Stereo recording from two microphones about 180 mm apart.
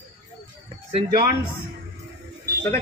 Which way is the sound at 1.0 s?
25° right (ahead or behind).